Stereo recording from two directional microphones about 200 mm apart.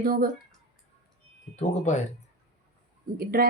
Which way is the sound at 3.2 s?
50° right (ahead or behind).